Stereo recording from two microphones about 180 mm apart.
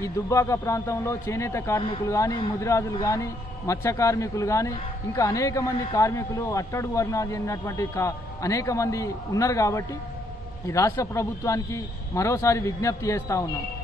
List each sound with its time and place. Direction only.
0.0 s a man's voice: 15° left (ahead or behind)